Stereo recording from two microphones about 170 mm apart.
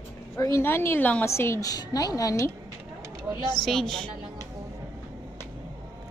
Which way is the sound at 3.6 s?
Centre (ahead or behind).